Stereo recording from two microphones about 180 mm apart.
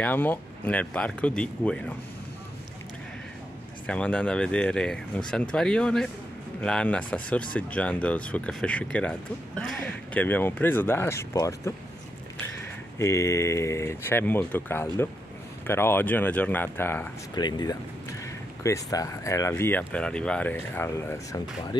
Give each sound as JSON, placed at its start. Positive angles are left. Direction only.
{"t": 0.0, "sound": "speech", "side_deg": 10}
{"t": 3.8, "sound": "speech", "side_deg": 5}
{"t": 13.0, "sound": "speech", "side_deg": 15}
{"t": 17.4, "sound": "speech", "side_deg": 25}